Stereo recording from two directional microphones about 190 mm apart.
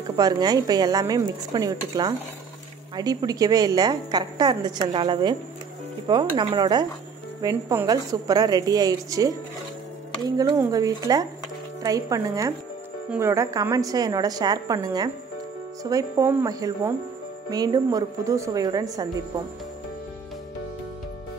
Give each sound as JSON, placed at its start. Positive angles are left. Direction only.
{"t": 0.1, "sound": "a woman's voice", "side_deg": -20}